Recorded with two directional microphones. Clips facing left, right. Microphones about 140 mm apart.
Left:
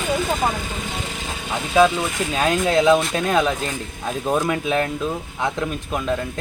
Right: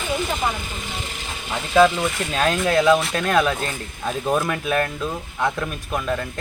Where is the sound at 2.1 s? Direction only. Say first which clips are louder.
Left 1 dB; 15° left (ahead or behind).